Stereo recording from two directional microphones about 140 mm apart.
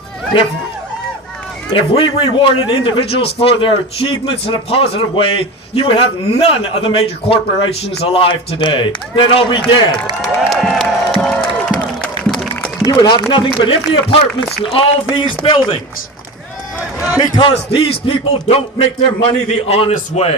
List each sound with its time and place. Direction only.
1.7 s a man's voice: 35° left (ahead or behind)
10.2 s music: centre (ahead or behind)
12.0 s a sound: 5° left (ahead or behind)
12.8 s a man's voice: 25° left (ahead or behind)
17.2 s a man's voice: 35° left (ahead or behind)